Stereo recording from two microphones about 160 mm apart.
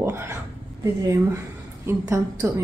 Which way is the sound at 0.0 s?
15° right (ahead or behind).